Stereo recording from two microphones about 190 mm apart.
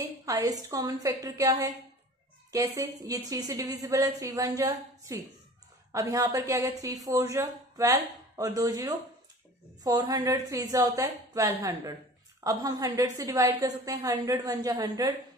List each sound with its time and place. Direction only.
0.2 s a woman's voice: 15° right (ahead or behind)